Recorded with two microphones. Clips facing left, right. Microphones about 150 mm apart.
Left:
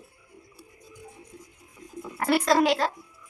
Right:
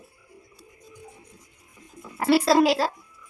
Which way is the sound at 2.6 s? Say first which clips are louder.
Right 2 dB; 35° right (ahead or behind).